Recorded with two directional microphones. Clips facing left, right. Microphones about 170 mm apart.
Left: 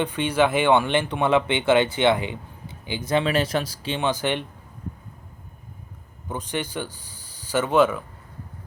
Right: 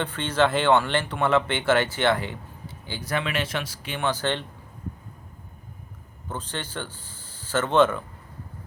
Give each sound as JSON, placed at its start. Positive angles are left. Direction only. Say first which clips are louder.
{"t": 0.0, "sound": "speech", "louder": "left 2 dB", "side_deg": 15}
{"t": 3.2, "sound": "speech", "louder": "left 6 dB", "side_deg": 35}
{"t": 3.9, "sound": "speech", "louder": "left 2 dB", "side_deg": 15}
{"t": 6.2, "sound": "speech", "louder": "left 5 dB", "side_deg": 15}